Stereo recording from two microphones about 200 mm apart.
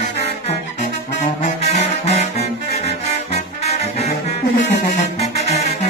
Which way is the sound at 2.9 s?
30° left (ahead or behind).